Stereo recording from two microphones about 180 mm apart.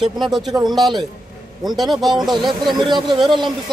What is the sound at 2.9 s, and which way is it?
Speech, 25° right (ahead or behind).